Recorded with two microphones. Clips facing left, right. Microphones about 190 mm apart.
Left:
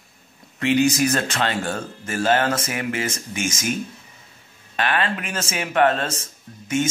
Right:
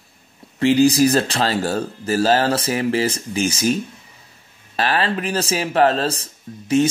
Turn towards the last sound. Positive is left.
turn(degrees=-35)  # may be behind; listen again after turning